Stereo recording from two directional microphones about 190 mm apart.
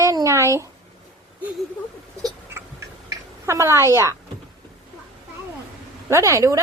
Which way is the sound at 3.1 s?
15° right (ahead or behind).